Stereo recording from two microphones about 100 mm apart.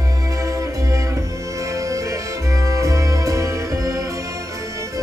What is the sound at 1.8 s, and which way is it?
Music, 30° right (ahead or behind).